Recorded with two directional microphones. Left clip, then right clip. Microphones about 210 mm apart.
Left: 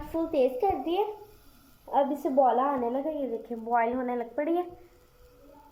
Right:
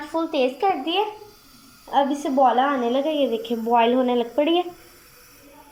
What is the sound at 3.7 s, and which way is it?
Speech, 25° right (ahead or behind).